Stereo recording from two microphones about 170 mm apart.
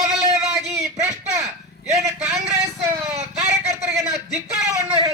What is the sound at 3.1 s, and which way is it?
Speech, 40° right (ahead or behind).